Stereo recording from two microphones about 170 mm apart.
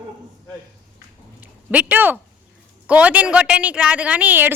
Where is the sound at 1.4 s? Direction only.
10° right (ahead or behind).